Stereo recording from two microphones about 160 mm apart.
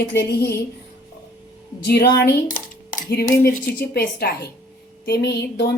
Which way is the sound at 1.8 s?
90° left.